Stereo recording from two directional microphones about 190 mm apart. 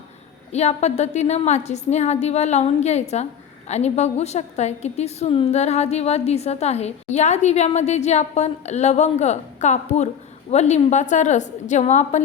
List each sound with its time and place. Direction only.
0.5 s a woman's voice: 35° left (ahead or behind)